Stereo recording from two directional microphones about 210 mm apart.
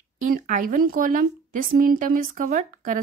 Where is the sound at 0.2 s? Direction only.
40° right (ahead or behind).